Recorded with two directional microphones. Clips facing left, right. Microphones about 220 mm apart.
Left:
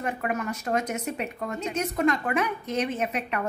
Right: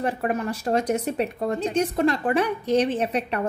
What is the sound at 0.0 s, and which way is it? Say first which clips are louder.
A woman's voice: right 4 dB; 30° right (ahead or behind).